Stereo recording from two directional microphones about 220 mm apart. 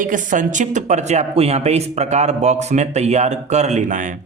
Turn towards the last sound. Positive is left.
turn(degrees=-35)  # may be behind; listen again after turning